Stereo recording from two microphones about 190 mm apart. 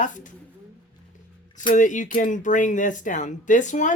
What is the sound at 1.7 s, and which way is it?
Speech, 40° left (ahead or behind).